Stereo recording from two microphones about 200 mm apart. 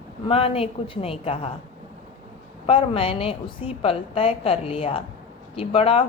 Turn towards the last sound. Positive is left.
turn(degrees=30)  # may be behind; listen again after turning